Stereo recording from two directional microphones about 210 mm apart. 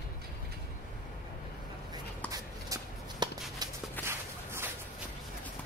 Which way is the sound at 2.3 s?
20° right (ahead or behind).